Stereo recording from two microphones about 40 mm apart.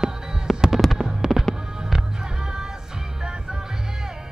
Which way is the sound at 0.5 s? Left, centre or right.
Centre.